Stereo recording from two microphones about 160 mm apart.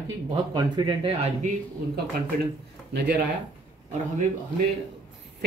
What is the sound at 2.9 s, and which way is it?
Speech, 90° right.